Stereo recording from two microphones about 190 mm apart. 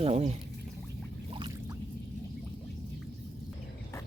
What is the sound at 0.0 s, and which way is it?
Speech, 30° right (ahead or behind).